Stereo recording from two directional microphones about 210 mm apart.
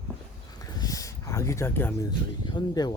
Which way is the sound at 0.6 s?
15° left (ahead or behind).